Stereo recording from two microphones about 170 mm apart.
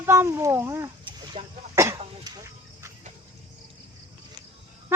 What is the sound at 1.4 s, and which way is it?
Speech, 35° right (ahead or behind).